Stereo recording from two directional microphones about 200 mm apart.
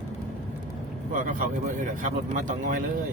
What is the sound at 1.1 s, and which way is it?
A man's voice, 40° right (ahead or behind).